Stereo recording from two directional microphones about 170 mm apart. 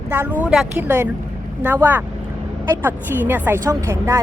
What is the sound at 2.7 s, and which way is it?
Speech, 10° right (ahead or behind).